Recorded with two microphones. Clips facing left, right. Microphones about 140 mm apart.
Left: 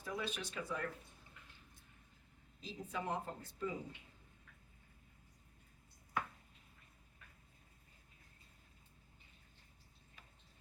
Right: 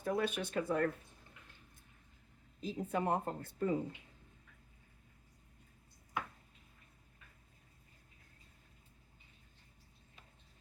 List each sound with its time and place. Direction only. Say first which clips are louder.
0.0 s speech: right 8 dB; 55° right (ahead or behind)
2.6 s speech: right 8 dB; 55° right (ahead or behind)